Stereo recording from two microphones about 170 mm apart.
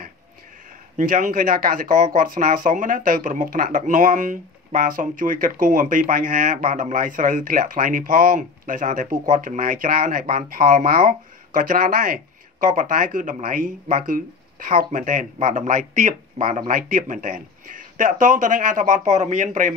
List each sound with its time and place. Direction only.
0.9 s speech: 50° right (ahead or behind)